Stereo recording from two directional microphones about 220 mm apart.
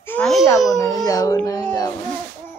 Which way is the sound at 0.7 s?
15° left (ahead or behind).